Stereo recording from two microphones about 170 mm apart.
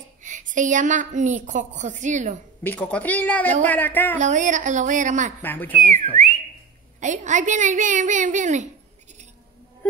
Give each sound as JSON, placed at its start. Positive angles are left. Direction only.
{"t": 0.2, "sound": "a woman's voice", "side_deg": -50}
{"t": 2.6, "sound": "a woman's voice", "side_deg": 10}
{"t": 4.2, "sound": "a woman's voice", "side_deg": -45}
{"t": 5.4, "sound": "a woman's voice", "side_deg": 10}
{"t": 5.8, "sound": "a woman's voice", "side_deg": -50}